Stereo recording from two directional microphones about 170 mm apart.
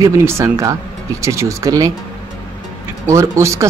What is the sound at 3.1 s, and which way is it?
Speech, 15° right (ahead or behind).